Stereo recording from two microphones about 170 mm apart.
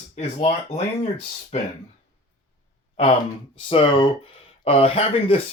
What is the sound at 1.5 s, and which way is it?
Speech, 40° left (ahead or behind).